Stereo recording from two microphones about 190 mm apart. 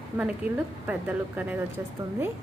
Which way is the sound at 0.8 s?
10° right (ahead or behind).